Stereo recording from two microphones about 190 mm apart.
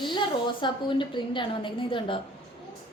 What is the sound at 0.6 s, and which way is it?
A woman's voice, 25° left (ahead or behind).